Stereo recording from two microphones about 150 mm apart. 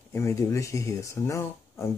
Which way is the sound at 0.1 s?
20° left (ahead or behind).